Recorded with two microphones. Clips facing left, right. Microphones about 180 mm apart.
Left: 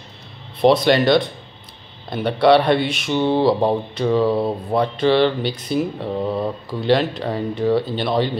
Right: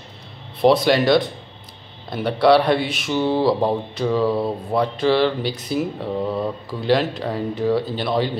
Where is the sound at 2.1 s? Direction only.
Centre (ahead or behind).